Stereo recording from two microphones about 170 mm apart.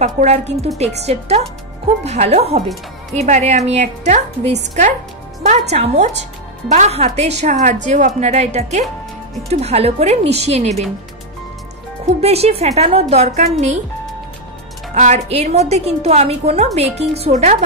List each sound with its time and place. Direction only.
0.0 s a woman's voice: 40° right (ahead or behind)
12.1 s a woman's voice: 40° right (ahead or behind)
15.0 s a woman's voice: 40° right (ahead or behind)